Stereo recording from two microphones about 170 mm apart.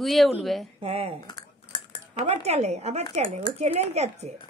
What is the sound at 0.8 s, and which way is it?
Speech, 35° right (ahead or behind).